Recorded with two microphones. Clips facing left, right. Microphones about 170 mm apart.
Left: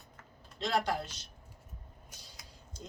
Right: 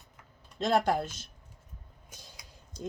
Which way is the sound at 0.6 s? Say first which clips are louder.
Right 6 dB; 50° right (ahead or behind).